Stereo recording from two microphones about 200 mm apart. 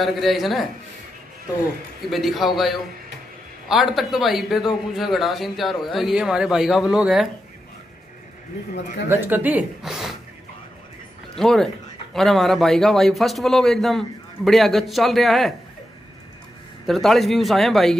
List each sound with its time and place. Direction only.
0.0 s a man's voice: centre (ahead or behind)
2.0 s a man's voice: centre (ahead or behind)
9.1 s speech: 10° right (ahead or behind)
11.3 s a man's voice: centre (ahead or behind)
16.8 s a man's voice: centre (ahead or behind)